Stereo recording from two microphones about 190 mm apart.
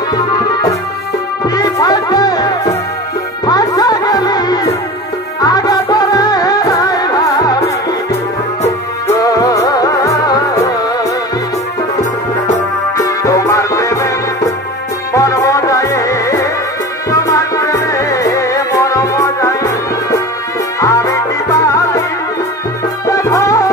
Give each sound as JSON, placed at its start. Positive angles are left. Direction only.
{"t": 0.1, "sound": "music", "side_deg": 20}
{"t": 9.0, "sound": "music", "side_deg": 20}
{"t": 12.9, "sound": "music", "side_deg": 15}
{"t": 23.0, "sound": "music", "side_deg": 15}